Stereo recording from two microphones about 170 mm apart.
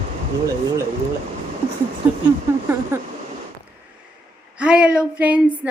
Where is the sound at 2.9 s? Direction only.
15° right (ahead or behind).